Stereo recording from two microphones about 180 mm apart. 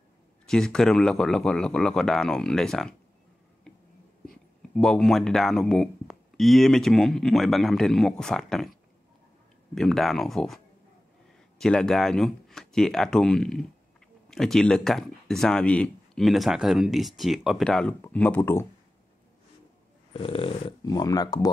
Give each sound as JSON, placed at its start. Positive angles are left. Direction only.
{"t": 0.5, "sound": "speech", "side_deg": 5}
{"t": 3.7, "sound": "a sound", "side_deg": 5}
{"t": 4.3, "sound": "speech", "side_deg": 0}
{"t": 9.8, "sound": "speech", "side_deg": 0}
{"t": 20.1, "sound": "speech", "side_deg": 30}